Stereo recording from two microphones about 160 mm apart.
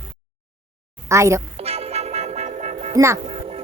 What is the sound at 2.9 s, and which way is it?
Speech, 20° right (ahead or behind).